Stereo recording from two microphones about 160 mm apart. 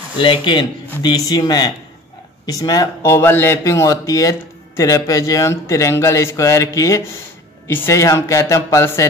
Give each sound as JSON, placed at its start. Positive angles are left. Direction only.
{"t": 0.2, "sound": "a man's voice", "side_deg": 30}